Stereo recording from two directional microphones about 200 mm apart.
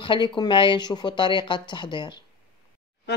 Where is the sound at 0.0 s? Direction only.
25° left (ahead or behind).